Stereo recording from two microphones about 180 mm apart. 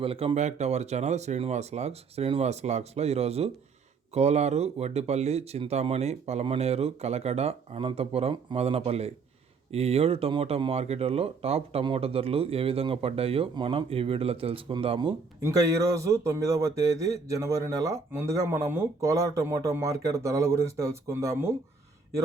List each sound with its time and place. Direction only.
0.0 s a man's voice: 30° right (ahead or behind); by 21.5 s 15° right (ahead or behind)